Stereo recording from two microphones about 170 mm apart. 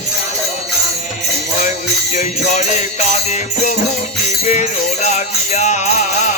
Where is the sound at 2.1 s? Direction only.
45° left (ahead or behind).